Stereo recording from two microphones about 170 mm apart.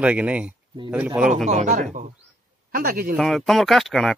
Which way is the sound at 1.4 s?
45° right (ahead or behind).